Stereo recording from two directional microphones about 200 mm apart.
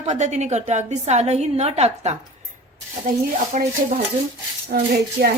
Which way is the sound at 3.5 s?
40° right (ahead or behind).